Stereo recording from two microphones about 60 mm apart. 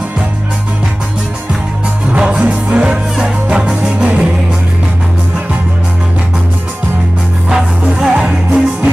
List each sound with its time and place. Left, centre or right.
2.1 s music: centre
7.4 s music: centre